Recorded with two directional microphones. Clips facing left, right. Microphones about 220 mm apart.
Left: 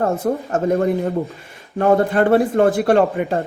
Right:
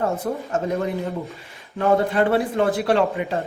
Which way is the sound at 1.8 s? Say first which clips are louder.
Left 4 dB; 50° left (ahead or behind).